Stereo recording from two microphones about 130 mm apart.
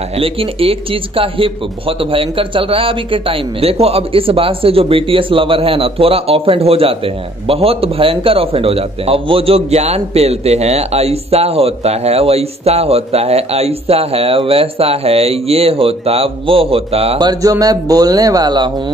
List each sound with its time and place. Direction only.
0.2 s a man's voice: 45° right (ahead or behind)
17.2 s speech: 30° right (ahead or behind)